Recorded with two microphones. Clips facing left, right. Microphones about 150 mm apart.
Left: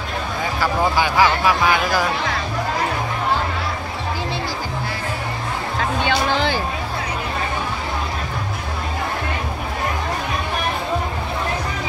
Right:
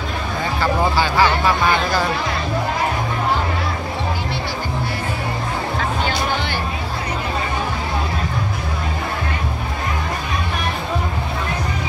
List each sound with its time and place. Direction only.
0.6 s speech: 15° left (ahead or behind)